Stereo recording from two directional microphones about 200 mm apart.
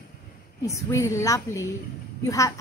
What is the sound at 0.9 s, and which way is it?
Speech, 15° left (ahead or behind).